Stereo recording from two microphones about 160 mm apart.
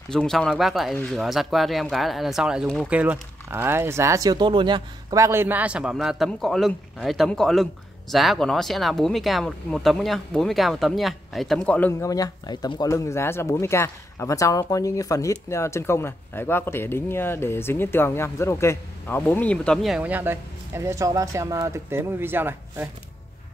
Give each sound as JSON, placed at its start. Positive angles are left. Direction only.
{"t": 0.1, "sound": "speech", "side_deg": 5}
{"t": 2.9, "sound": "speech", "side_deg": -10}
{"t": 12.0, "sound": "speech", "side_deg": 20}